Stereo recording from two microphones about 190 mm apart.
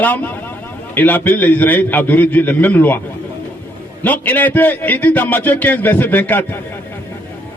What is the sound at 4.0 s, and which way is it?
A man's voice, 10° left (ahead or behind).